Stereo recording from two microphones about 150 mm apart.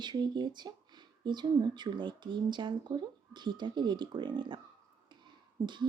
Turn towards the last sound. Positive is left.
turn(degrees=-30)  # may be behind; listen again after turning